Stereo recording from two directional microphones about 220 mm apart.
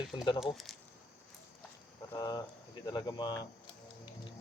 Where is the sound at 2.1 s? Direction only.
20° left (ahead or behind).